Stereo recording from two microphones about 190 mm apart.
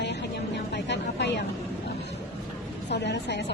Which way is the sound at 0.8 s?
65° left (ahead or behind).